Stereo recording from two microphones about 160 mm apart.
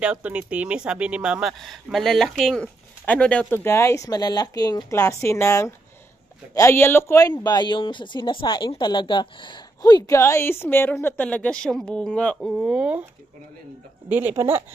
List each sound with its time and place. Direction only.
0.0 s speech: 10° right (ahead or behind)
14.0 s speech: 10° right (ahead or behind)